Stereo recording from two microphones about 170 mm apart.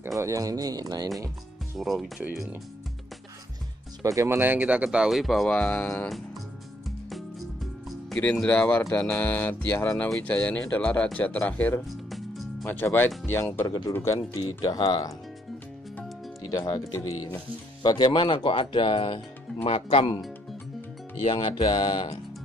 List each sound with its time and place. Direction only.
0.2 s speech: 20° right (ahead or behind)
1.8 s speech: centre (ahead or behind)
4.0 s speech: 20° right (ahead or behind); by 6.1 s 10° left (ahead or behind)
8.1 s speech: 5° left (ahead or behind)
12.6 s speech: 10° left (ahead or behind)
16.4 s speech: 20° left (ahead or behind)
21.3 s speech: 30° left (ahead or behind)